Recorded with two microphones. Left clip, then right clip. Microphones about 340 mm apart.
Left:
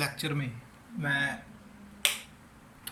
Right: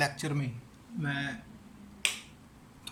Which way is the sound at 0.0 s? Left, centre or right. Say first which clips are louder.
Right 1 dB; centre.